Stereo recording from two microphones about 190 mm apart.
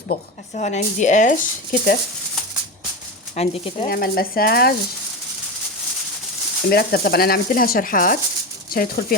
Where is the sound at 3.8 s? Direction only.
50° left (ahead or behind).